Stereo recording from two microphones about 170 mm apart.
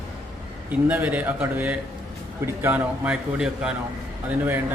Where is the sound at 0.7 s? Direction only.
10° right (ahead or behind).